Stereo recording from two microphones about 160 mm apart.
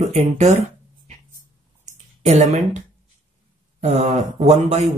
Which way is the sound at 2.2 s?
45° right (ahead or behind).